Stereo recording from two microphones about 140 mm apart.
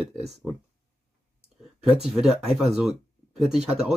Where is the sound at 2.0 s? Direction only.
5° right (ahead or behind).